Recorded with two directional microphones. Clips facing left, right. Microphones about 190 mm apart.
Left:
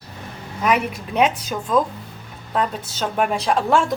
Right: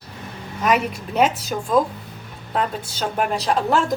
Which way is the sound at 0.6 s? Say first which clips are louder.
Even; centre (ahead or behind).